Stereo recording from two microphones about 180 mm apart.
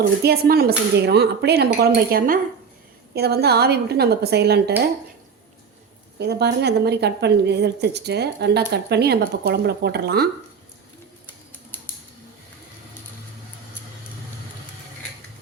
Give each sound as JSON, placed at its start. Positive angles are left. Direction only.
{"t": 0.0, "sound": "speech", "side_deg": -60}
{"t": 6.1, "sound": "a woman's voice", "side_deg": -65}